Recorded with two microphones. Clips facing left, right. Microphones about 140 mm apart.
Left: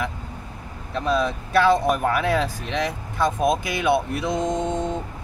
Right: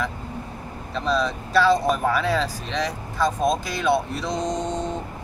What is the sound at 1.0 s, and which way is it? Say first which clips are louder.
Speech: left 1 dB; 55° left (ahead or behind).